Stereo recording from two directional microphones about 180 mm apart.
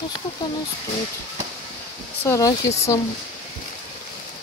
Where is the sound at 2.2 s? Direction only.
15° left (ahead or behind).